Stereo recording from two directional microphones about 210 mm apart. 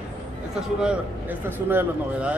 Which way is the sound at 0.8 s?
5° right (ahead or behind).